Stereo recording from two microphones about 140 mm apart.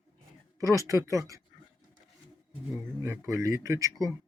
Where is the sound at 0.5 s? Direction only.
25° right (ahead or behind).